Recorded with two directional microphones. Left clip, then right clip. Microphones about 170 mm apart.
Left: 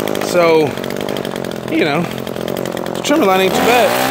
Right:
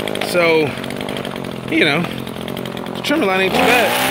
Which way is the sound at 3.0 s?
20° left (ahead or behind).